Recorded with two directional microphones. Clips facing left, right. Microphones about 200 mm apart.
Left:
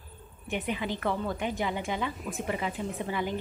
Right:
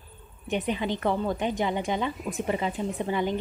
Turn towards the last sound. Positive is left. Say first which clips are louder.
# right 4 dB
turn(degrees=-20)  # may be behind; listen again after turning